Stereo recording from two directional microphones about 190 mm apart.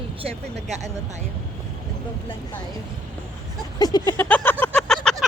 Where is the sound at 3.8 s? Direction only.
20° left (ahead or behind); by 5.2 s centre (ahead or behind).